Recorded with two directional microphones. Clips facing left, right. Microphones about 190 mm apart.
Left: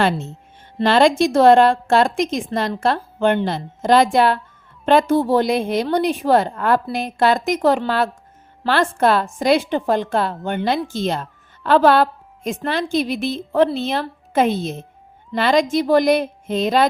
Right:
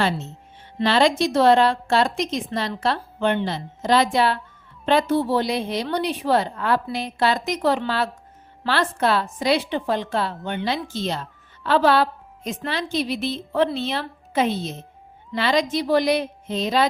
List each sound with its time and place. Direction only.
0.8 s a woman's voice: 50° left (ahead or behind)